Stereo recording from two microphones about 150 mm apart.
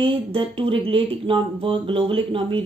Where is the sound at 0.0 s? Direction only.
40° right (ahead or behind).